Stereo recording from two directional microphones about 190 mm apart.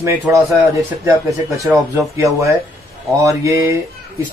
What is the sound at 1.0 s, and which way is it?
A man's voice, 15° right (ahead or behind).